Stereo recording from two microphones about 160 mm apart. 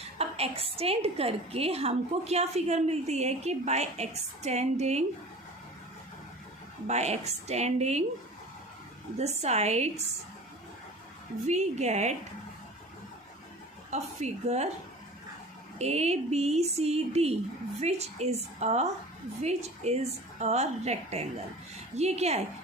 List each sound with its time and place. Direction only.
0.2 s a woman's voice: 40° right (ahead or behind)
6.8 s a woman's voice: 45° right (ahead or behind)
9.1 s a woman's voice: 45° right (ahead or behind)
11.4 s a woman's voice: 45° right (ahead or behind)
13.9 s a woman's voice: 45° right (ahead or behind)
15.8 s a woman's voice: 40° right (ahead or behind)